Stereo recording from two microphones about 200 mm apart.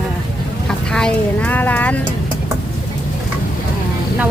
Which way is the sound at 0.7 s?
5° left (ahead or behind).